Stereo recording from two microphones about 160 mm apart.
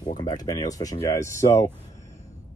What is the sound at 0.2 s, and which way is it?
Speech, 25° left (ahead or behind).